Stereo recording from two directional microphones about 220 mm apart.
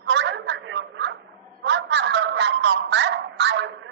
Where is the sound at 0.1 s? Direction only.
55° right (ahead or behind).